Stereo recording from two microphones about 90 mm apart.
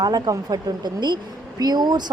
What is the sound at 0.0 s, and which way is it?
Speech, 45° right (ahead or behind).